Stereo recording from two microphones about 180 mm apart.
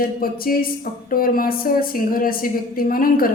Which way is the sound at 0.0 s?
55° left (ahead or behind).